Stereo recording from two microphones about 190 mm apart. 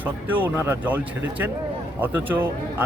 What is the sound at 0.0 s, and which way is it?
A man's voice, 10° right (ahead or behind).